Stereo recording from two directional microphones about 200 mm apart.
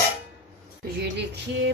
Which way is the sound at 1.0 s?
60° right (ahead or behind).